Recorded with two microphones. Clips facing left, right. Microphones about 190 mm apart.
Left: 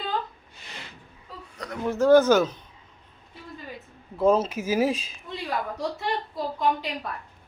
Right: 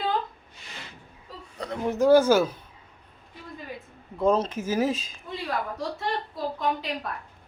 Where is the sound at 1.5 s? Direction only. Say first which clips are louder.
Right 3 dB; 30° right (ahead or behind).